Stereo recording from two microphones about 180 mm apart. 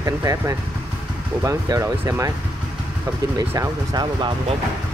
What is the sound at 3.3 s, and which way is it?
Speech, 20° right (ahead or behind).